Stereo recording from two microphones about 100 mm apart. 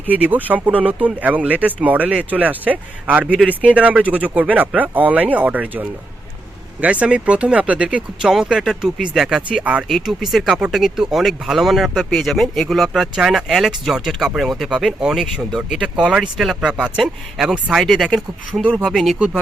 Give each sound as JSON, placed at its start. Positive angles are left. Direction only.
{"t": 0.1, "sound": "speech", "side_deg": -15}